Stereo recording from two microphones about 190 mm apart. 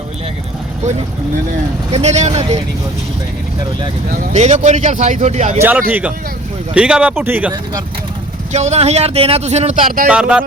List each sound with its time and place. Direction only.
1.9 s speech: 35° right (ahead or behind)
4.3 s speech: 35° right (ahead or behind)
5.9 s speech: 5° right (ahead or behind)
8.5 s speech: 35° right (ahead or behind)
10.1 s speech: 5° right (ahead or behind)